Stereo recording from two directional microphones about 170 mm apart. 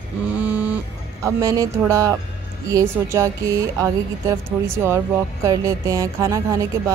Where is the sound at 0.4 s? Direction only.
10° right (ahead or behind).